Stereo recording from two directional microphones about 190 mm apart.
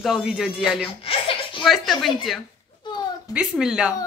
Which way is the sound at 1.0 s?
30° left (ahead or behind).